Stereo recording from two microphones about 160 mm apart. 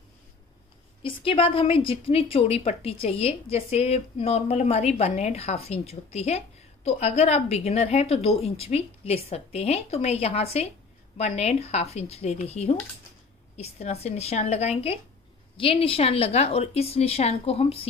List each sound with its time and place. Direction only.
1.0 s a woman's voice: 35° left (ahead or behind)